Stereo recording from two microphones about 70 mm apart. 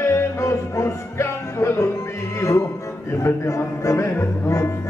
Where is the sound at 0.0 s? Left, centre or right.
Left.